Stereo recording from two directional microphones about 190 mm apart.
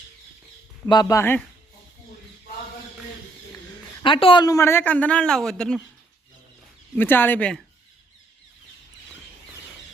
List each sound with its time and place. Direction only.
0.9 s speech: 20° left (ahead or behind)
4.0 s speech: 25° left (ahead or behind); by 5.8 s 5° left (ahead or behind)
6.9 s speech: 10° left (ahead or behind)